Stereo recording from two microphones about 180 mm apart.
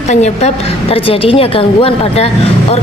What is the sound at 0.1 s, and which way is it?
A woman's voice, 40° left (ahead or behind).